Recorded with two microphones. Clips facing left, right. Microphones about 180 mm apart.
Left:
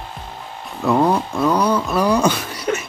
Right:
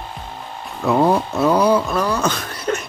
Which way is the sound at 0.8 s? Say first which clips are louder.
Right 1 dB; 5° right (ahead or behind).